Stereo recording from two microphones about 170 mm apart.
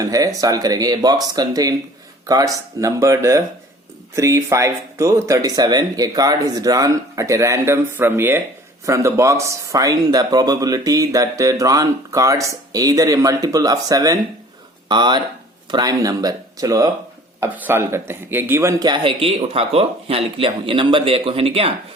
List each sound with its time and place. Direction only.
0.0 s speech: 20° right (ahead or behind)
18.8 s speech: 25° right (ahead or behind)